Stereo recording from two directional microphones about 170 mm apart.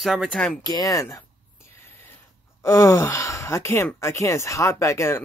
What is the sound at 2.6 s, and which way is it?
Speech, 15° left (ahead or behind).